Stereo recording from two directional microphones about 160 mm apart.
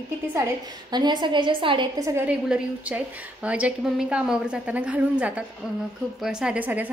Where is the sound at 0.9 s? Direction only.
25° right (ahead or behind).